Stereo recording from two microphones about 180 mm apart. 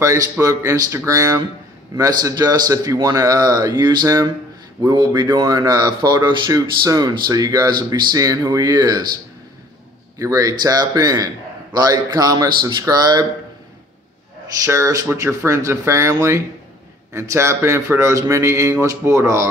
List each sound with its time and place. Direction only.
0.0 s a man's voice: 15° right (ahead or behind)
10.1 s speech: 20° right (ahead or behind)
14.6 s a man's voice: 15° right (ahead or behind)